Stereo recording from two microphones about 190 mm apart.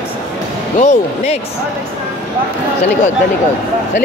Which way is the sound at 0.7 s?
35° left (ahead or behind).